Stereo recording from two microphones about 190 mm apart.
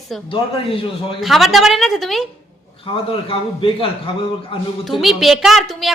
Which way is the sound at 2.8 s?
25° left (ahead or behind).